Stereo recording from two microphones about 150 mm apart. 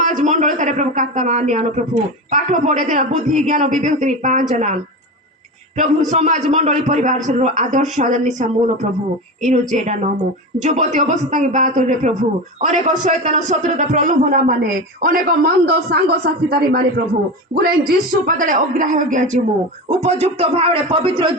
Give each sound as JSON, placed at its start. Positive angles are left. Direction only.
{"t": 0.0, "sound": "a man's voice", "side_deg": -55}
{"t": 19.9, "sound": "a man's voice", "side_deg": -45}